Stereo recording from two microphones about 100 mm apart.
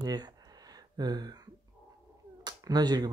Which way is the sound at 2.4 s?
45° right (ahead or behind).